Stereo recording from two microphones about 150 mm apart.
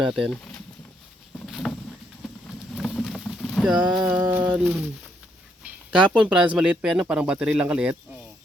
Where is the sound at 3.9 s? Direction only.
10° right (ahead or behind).